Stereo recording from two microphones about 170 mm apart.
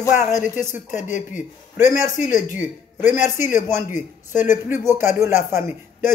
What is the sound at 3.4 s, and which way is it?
Speech, 50° left (ahead or behind).